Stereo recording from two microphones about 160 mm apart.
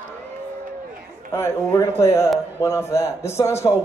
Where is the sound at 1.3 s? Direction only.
15° left (ahead or behind).